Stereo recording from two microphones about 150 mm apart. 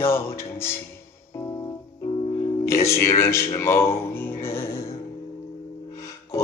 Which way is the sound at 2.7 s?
20° left (ahead or behind).